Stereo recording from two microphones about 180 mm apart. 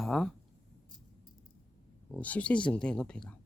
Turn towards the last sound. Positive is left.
turn(degrees=5)  # may be behind; listen again after turning